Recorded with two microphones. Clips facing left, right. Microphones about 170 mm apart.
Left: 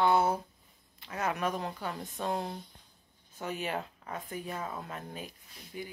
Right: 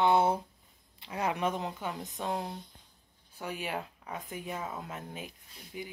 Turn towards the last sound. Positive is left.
turn(degrees=-10)  # may be behind; listen again after turning